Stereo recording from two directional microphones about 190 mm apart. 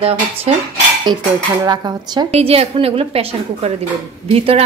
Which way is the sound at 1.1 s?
20° right (ahead or behind).